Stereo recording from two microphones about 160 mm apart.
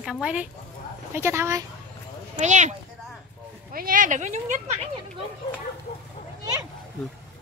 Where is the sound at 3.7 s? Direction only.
60° right (ahead or behind).